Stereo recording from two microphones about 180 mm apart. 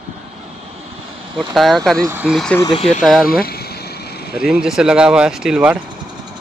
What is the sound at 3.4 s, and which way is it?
Vehicle, 60° left (ahead or behind).